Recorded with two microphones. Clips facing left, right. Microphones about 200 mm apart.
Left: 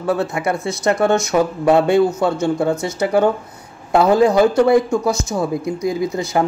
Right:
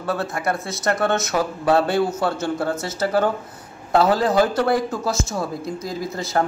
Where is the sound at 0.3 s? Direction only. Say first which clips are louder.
Left 4 dB; centre (ahead or behind).